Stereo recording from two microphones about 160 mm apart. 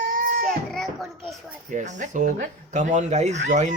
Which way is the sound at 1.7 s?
50° right (ahead or behind).